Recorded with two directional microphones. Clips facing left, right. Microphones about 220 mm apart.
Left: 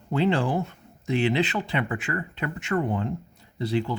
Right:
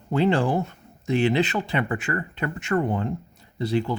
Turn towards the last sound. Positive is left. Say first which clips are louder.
# right 2 dB
turn(degrees=-45)  # may be behind; listen again after turning